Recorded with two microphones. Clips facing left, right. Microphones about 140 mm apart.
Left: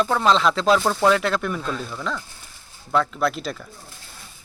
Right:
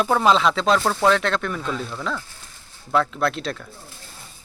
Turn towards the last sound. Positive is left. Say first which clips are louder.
# even
turn(degrees=0)  # may be behind; listen again after turning